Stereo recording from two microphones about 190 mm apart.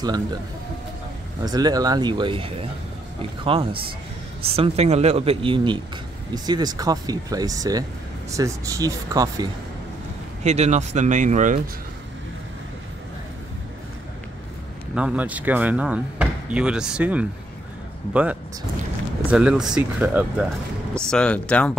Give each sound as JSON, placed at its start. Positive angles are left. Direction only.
{"t": 1.4, "sound": "a man's voice", "side_deg": -20}
{"t": 10.4, "sound": "a man's voice", "side_deg": -35}
{"t": 15.0, "sound": "speech", "side_deg": -5}
{"t": 21.1, "sound": "speech", "side_deg": 5}